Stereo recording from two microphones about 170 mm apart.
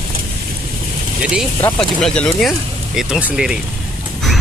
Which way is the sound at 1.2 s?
5° right (ahead or behind).